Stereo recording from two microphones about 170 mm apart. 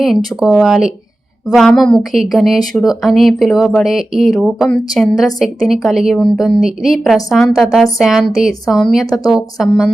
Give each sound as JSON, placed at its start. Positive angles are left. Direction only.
{"t": 0.0, "sound": "speech", "side_deg": 0}